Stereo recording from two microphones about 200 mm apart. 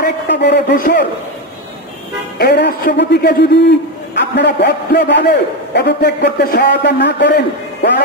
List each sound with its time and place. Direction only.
0.0 s a man's voice: 55° left (ahead or behind)
2.3 s a man's voice: 55° left (ahead or behind)